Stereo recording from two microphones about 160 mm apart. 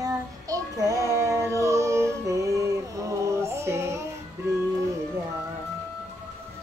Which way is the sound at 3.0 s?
15° right (ahead or behind).